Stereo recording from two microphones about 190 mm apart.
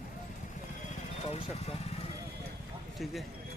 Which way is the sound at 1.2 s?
30° left (ahead or behind).